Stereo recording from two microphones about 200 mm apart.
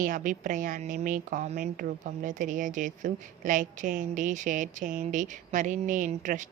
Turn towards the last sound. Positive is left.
turn(degrees=-40)  # may be behind; listen again after turning